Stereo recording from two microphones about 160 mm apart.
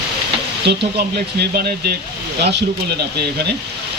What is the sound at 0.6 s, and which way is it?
Speech, 80° right.